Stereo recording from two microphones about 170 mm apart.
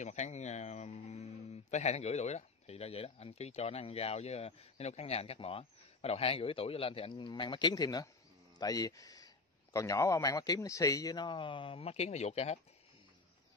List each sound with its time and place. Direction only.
0.0 s a man's voice: 45° left (ahead or behind)